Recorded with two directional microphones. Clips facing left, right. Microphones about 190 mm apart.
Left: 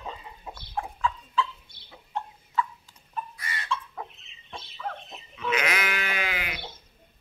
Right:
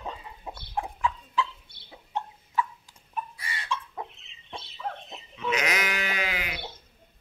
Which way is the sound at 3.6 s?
15° right (ahead or behind).